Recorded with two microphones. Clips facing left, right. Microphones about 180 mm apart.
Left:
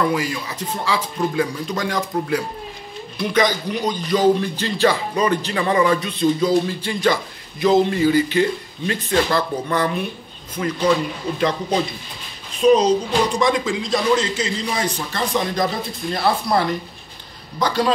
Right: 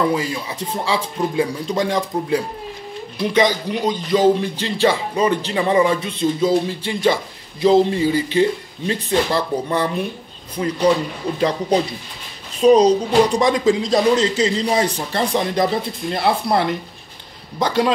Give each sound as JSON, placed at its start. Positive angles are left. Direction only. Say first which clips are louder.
{"t": 0.1, "sound": "speech", "louder": "right 1 dB", "side_deg": -25}